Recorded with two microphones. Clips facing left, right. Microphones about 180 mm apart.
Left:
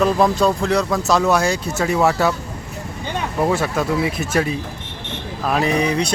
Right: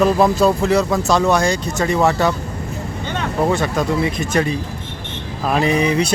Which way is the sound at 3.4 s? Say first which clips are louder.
Right 1 dB; 5° left (ahead or behind).